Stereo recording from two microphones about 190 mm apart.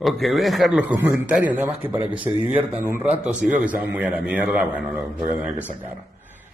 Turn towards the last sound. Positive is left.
turn(degrees=-10)  # may be behind; listen again after turning